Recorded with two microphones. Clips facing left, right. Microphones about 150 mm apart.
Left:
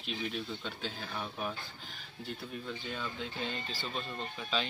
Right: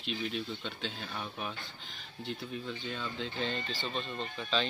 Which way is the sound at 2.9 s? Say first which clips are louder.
Right 2 dB; 5° left (ahead or behind).